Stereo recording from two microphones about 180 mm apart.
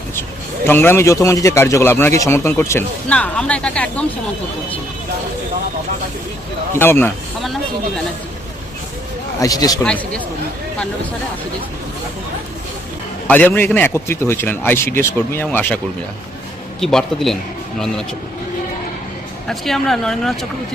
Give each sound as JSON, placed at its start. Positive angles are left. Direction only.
{"t": 0.2, "sound": "speech", "side_deg": 10}
{"t": 6.7, "sound": "speech", "side_deg": 15}
{"t": 9.4, "sound": "speech", "side_deg": 20}
{"t": 9.8, "sound": "speech", "side_deg": 5}
{"t": 13.2, "sound": "speech", "side_deg": 10}
{"t": 16.8, "sound": "speech", "side_deg": 0}
{"t": 19.5, "sound": "speech", "side_deg": 0}